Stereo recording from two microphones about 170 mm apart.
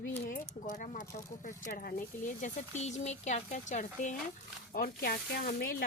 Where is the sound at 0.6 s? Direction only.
50° left (ahead or behind).